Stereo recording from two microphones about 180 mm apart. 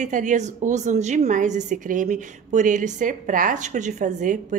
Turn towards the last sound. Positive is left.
turn(degrees=-40)  # may be behind; listen again after turning